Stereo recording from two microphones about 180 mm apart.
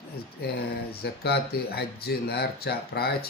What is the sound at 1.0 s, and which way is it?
Speech, 60° left (ahead or behind).